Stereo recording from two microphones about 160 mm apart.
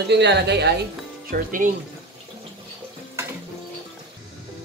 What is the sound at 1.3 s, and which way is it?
Speech, 55° right (ahead or behind).